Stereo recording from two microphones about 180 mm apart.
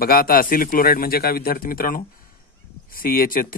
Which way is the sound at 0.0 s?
55° left (ahead or behind).